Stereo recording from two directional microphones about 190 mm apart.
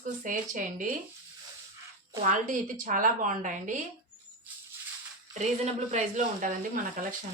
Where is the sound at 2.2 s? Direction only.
45° right (ahead or behind).